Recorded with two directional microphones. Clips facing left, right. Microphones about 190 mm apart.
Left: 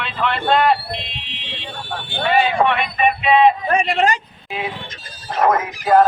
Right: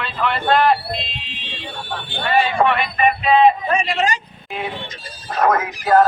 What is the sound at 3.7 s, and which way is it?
Speech, 55° left (ahead or behind).